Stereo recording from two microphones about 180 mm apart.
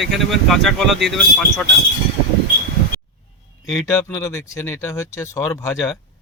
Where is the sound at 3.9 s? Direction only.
15° left (ahead or behind).